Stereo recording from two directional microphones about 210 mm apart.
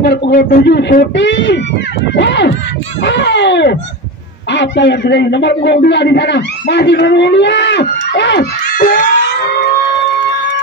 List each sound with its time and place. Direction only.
0.0 s a man's voice: 55° left (ahead or behind)